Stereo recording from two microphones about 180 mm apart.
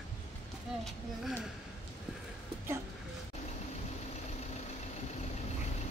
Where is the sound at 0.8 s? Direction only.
Centre (ahead or behind).